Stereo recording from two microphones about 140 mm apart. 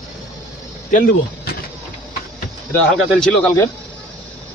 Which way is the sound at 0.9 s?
90° left.